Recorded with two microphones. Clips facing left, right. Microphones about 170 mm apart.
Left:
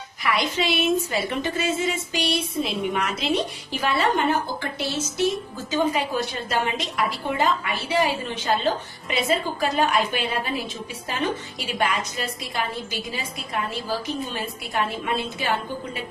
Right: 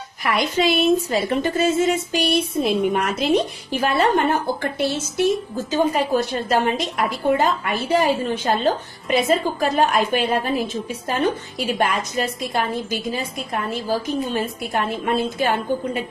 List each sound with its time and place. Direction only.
0.2 s a woman's voice: 45° right (ahead or behind)